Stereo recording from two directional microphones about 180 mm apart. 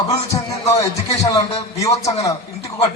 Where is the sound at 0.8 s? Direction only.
20° left (ahead or behind).